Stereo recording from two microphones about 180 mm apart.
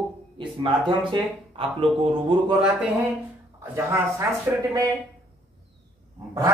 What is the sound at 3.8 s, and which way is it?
Speech, 15° right (ahead or behind).